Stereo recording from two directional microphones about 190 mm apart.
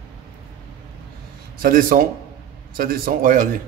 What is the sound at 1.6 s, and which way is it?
Speech, 50° right (ahead or behind).